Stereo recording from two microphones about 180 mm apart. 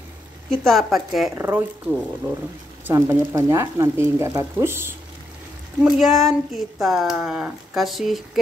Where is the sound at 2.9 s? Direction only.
15° right (ahead or behind).